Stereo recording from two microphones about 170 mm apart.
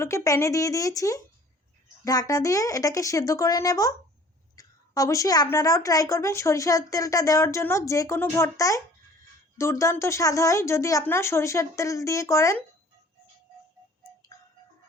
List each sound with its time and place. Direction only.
0.0 s a woman's voice: 15° left (ahead or behind)